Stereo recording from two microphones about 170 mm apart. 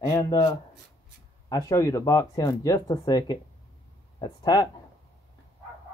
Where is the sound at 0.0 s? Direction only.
20° left (ahead or behind).